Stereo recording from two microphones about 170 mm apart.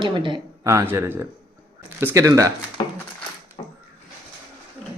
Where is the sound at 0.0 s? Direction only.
30° right (ahead or behind).